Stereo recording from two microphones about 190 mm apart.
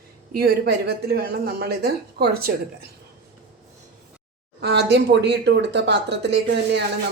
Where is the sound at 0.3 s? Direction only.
55° right (ahead or behind).